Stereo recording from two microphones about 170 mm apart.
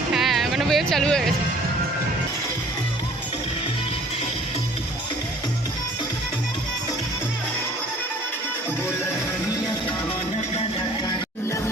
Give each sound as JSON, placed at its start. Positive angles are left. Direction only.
{"t": 0.1, "sound": "music", "side_deg": 0}